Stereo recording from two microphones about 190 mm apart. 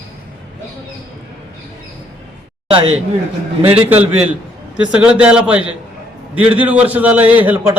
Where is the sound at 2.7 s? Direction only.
30° right (ahead or behind).